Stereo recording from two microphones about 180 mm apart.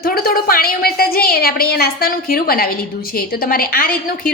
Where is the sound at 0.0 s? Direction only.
55° left (ahead or behind).